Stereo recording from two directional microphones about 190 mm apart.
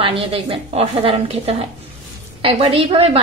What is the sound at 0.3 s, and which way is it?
A woman's voice, 30° right (ahead or behind).